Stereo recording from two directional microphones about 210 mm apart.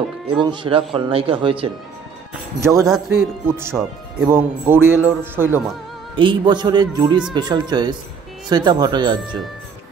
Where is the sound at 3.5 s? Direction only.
10° right (ahead or behind).